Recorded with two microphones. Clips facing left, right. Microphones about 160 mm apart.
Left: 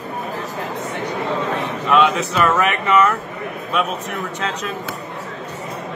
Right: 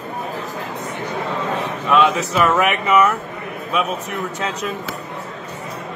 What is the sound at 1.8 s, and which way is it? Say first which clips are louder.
Speech: even; centre (ahead or behind).